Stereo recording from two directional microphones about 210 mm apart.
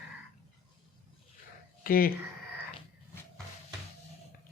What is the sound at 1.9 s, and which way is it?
Speech, 45° left (ahead or behind).